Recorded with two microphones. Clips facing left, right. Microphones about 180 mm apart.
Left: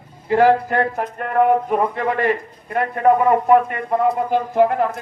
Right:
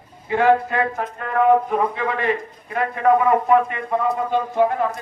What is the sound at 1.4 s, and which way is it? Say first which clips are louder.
A man's voice: even; 50° left (ahead or behind).